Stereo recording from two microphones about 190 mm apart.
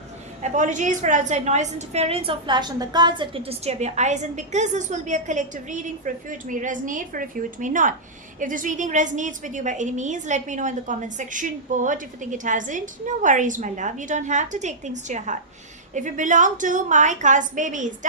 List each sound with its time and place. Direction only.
0.4 s a woman's voice: 40° right (ahead or behind)